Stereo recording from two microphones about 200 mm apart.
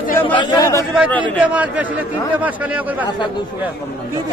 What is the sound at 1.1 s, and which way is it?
Speech, 10° left (ahead or behind).